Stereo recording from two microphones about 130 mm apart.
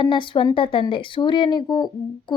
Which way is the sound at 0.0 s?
40° left (ahead or behind).